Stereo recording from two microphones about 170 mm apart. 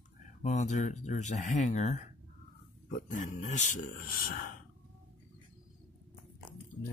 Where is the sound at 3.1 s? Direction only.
45° left (ahead or behind).